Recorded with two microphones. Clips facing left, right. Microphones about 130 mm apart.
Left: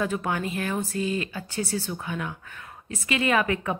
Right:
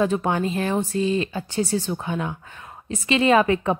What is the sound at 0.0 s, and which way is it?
A woman's voice, 30° right (ahead or behind).